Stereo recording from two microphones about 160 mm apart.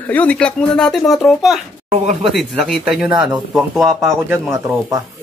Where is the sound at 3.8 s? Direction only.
15° right (ahead or behind).